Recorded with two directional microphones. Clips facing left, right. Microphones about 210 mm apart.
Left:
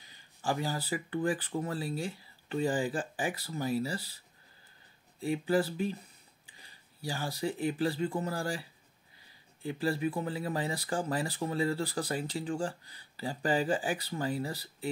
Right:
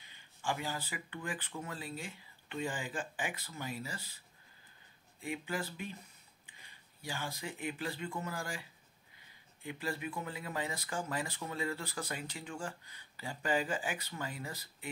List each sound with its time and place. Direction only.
0.0 s speech: 35° left (ahead or behind)
5.2 s speech: 35° left (ahead or behind)